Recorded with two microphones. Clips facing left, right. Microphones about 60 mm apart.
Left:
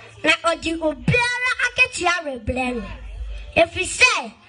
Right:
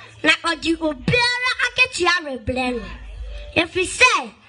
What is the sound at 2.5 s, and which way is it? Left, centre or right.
A woman's voice, centre.